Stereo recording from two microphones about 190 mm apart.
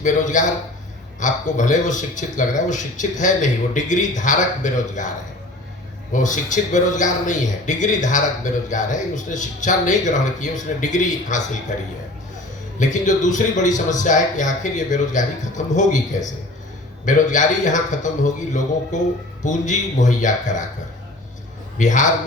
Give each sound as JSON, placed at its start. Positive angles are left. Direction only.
{"t": 0.0, "sound": "a man's voice", "side_deg": 40}
{"t": 6.2, "sound": "a man's voice", "side_deg": 40}
{"t": 17.1, "sound": "a man's voice", "side_deg": 40}
{"t": 21.8, "sound": "a man's voice", "side_deg": 40}